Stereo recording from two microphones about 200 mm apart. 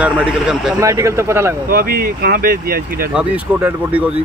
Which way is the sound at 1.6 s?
45° right (ahead or behind).